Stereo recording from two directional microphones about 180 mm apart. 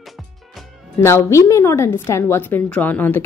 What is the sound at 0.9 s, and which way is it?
A woman's voice, 15° left (ahead or behind).